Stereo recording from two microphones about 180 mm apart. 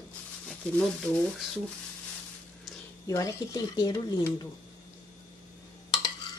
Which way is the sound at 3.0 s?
20° left (ahead or behind).